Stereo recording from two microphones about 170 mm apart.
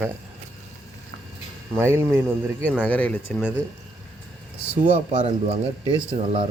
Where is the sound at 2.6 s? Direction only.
5° left (ahead or behind).